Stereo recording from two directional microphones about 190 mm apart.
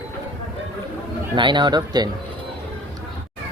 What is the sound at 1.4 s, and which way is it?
Speech, 25° right (ahead or behind).